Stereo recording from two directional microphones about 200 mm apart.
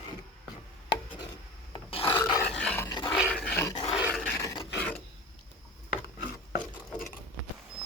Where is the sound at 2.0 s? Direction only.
15° left (ahead or behind).